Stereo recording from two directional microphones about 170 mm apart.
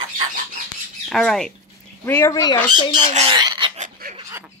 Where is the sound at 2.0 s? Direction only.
15° left (ahead or behind).